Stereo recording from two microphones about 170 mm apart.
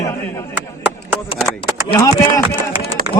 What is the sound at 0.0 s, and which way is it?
Chop, 15° left (ahead or behind).